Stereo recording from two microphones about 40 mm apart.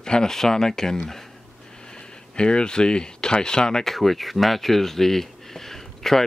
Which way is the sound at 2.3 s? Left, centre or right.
Left.